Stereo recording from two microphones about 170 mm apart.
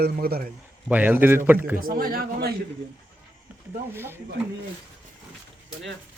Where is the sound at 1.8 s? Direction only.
60° right (ahead or behind).